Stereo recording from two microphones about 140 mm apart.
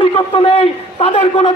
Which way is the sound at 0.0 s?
40° left (ahead or behind).